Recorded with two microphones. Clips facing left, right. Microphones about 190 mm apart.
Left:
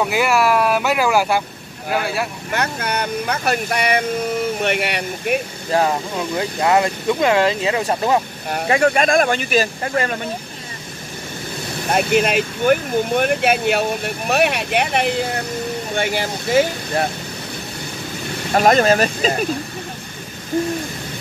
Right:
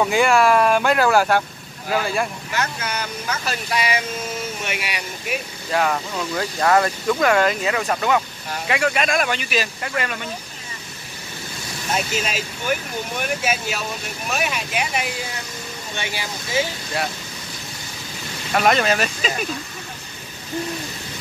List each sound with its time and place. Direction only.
0.0 s speech: 5° left (ahead or behind)
2.5 s speech: 60° left (ahead or behind)
5.7 s speech: 30° left (ahead or behind)
6.1 s speech: 20° left (ahead or behind)
8.6 s speech: 40° left (ahead or behind)
11.9 s speech: 55° left (ahead or behind)
18.5 s speech: 40° left (ahead or behind)